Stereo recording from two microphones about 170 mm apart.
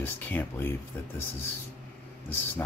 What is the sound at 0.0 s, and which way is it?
Speech, 10° left (ahead or behind).